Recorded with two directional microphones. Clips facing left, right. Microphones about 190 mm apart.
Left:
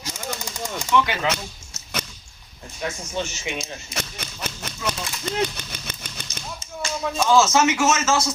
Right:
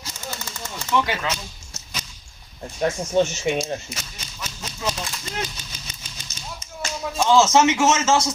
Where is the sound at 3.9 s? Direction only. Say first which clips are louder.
Left 5 dB; 60° left (ahead or behind).